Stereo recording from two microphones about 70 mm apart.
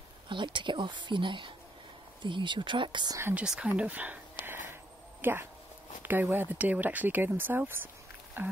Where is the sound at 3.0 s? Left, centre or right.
Right.